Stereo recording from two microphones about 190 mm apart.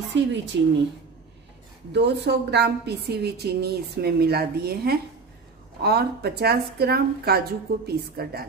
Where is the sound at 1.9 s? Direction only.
65° right (ahead or behind).